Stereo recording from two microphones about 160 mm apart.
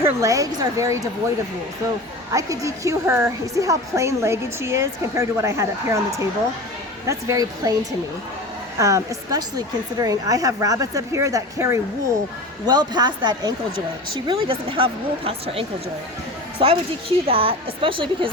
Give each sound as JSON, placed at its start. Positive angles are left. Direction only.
{"t": 0.0, "sound": "a woman's voice", "side_deg": -20}
{"t": 2.3, "sound": "a woman's voice", "side_deg": -20}
{"t": 8.8, "sound": "a woman's voice", "side_deg": -20}